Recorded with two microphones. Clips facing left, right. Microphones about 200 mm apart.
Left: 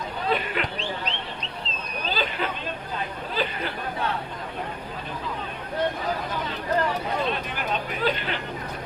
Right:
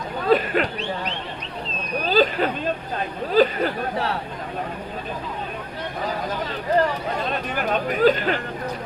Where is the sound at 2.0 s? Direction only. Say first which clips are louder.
Right 9 dB; 40° right (ahead or behind).